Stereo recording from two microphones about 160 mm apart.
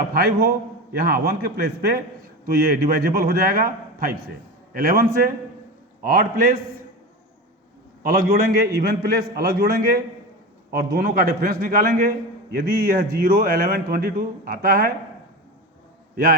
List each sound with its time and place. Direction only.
0.1 s a man's voice: 75° right (ahead or behind)
2.5 s a man's voice: 75° right (ahead or behind)
8.1 s a man's voice: 75° right (ahead or behind)